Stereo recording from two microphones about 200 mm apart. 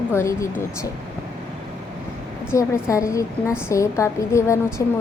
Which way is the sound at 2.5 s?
15° left (ahead or behind).